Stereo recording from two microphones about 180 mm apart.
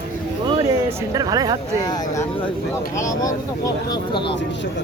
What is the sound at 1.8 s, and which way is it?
Speech, 20° left (ahead or behind).